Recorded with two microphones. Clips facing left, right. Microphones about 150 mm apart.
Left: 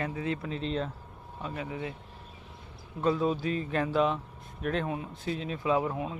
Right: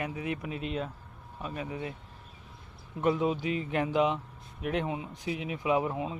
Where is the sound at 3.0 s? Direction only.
20° right (ahead or behind).